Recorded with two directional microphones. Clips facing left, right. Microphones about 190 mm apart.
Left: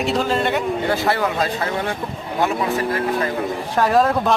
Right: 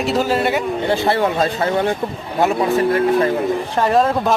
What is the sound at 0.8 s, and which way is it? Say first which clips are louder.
Speech: right 3 dB; 25° right (ahead or behind).